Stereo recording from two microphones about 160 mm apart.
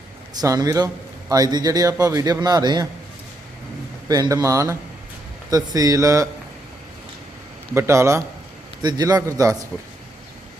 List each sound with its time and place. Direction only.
0.3 s a man's voice: 25° right (ahead or behind)
4.1 s a man's voice: 25° right (ahead or behind)
7.7 s a man's voice: 15° right (ahead or behind)